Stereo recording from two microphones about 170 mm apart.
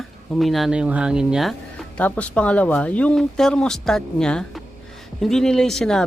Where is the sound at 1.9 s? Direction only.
5° left (ahead or behind).